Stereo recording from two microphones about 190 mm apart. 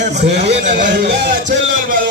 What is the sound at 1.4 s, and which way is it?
Speech, 45° right (ahead or behind).